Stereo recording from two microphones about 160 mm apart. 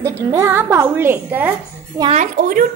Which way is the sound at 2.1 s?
50° right (ahead or behind).